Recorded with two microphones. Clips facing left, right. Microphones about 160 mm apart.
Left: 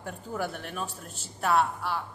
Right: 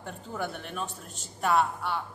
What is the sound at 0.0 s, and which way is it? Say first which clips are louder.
A woman's voice: left 2 dB; 5° left (ahead or behind).